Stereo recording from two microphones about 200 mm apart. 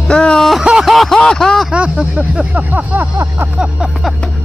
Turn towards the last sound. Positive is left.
turn(degrees=-10)  # may be behind; listen again after turning